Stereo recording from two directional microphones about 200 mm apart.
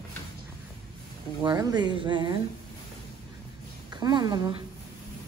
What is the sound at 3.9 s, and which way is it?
Speech, 20° right (ahead or behind).